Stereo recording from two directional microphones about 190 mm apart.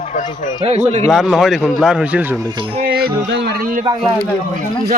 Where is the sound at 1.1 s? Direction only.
5° right (ahead or behind).